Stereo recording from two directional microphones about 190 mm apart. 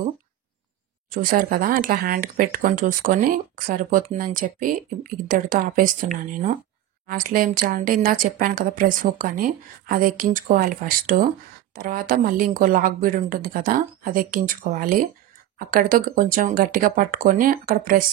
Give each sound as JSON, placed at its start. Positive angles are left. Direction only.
{"t": 1.1, "sound": "speech", "side_deg": -50}